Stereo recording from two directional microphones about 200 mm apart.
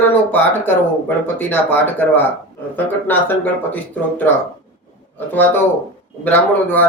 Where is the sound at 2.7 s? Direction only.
10° left (ahead or behind).